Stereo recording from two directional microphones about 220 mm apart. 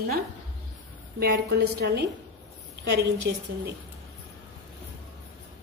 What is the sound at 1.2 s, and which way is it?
Speech, 50° right (ahead or behind).